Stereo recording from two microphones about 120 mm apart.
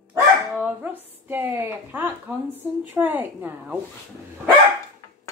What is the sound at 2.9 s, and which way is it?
Speech, 15° right (ahead or behind).